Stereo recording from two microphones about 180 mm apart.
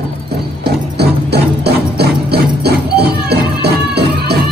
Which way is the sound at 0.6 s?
65° right (ahead or behind).